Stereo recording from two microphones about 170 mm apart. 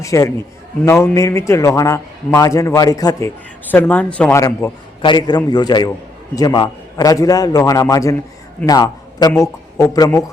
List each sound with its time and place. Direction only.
0.0 s a man's voice: 20° left (ahead or behind)
4.4 s a man's voice: 20° left (ahead or behind)